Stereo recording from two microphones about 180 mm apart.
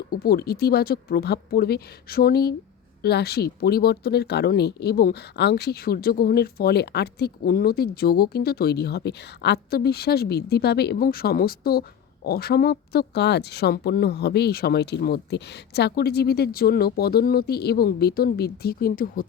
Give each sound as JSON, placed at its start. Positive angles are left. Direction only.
{"t": 0.1, "sound": "speech", "side_deg": 60}